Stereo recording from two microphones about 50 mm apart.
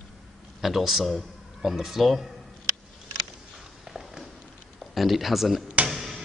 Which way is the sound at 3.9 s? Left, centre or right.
Centre.